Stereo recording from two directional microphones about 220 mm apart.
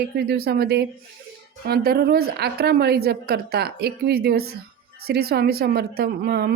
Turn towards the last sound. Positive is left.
turn(degrees=-45)  # may be behind; listen again after turning